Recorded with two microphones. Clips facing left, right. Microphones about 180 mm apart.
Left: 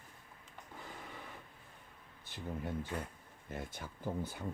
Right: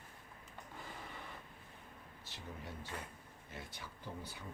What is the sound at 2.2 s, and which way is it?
Speech, 55° left (ahead or behind).